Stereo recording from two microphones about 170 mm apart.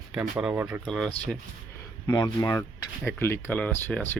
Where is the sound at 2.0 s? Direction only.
20° left (ahead or behind).